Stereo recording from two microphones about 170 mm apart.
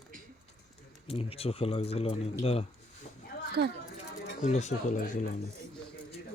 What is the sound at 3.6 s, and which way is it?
Speech, 75° right (ahead or behind).